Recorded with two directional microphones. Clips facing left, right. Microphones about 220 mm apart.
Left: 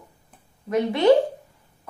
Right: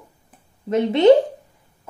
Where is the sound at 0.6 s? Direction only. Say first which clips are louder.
Right 4 dB; 25° right (ahead or behind).